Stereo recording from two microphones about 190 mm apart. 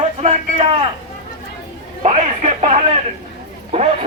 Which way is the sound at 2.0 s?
35° right (ahead or behind).